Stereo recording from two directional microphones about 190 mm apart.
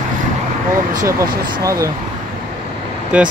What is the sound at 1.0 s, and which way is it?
Speech, 15° right (ahead or behind).